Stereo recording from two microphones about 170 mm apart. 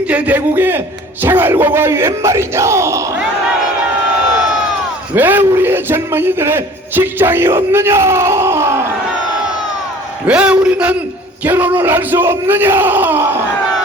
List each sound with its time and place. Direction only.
0.1 s a man's voice: 10° right (ahead or behind)
5.1 s a man's voice: 10° right (ahead or behind)
10.2 s a man's voice: 5° right (ahead or behind)